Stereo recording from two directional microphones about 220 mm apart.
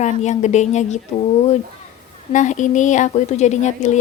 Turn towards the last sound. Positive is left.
turn(degrees=30)  # may be behind; listen again after turning